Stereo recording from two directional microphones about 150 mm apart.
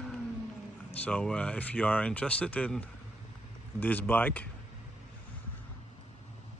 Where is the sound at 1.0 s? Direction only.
5° left (ahead or behind).